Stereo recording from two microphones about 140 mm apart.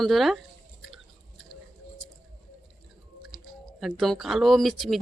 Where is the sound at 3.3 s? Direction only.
Centre (ahead or behind).